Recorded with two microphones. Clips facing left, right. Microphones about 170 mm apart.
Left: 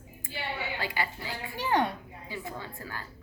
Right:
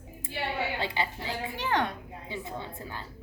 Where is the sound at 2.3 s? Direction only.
20° right (ahead or behind).